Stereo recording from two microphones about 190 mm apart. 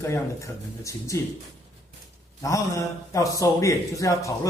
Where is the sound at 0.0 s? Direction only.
15° left (ahead or behind).